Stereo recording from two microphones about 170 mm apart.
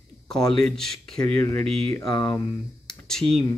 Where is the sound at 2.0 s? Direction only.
20° left (ahead or behind).